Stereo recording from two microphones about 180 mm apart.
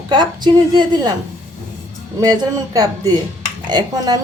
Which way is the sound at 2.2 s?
20° right (ahead or behind).